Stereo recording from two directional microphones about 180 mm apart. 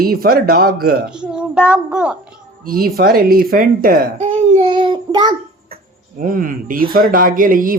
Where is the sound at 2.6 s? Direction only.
55° right (ahead or behind).